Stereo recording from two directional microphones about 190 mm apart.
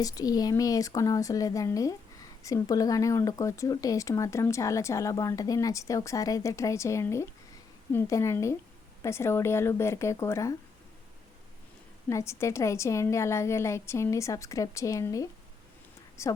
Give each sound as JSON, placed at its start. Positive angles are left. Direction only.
{"t": 0.0, "sound": "speech", "side_deg": 20}
{"t": 12.0, "sound": "speech", "side_deg": 15}